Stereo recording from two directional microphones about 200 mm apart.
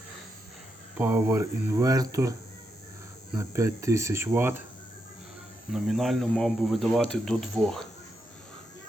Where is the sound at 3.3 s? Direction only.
15° right (ahead or behind).